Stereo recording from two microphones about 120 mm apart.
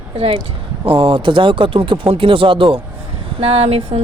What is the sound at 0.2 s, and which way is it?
Speech, 50° right (ahead or behind).